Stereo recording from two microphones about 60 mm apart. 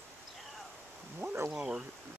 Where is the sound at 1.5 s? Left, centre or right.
Centre.